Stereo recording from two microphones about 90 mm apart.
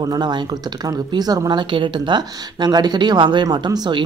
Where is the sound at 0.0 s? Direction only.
50° right (ahead or behind).